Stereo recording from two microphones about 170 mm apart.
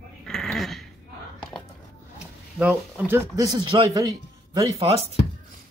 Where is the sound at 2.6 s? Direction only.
10° right (ahead or behind).